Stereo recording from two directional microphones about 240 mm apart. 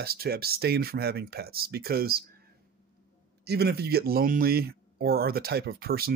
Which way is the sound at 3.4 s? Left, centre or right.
Right.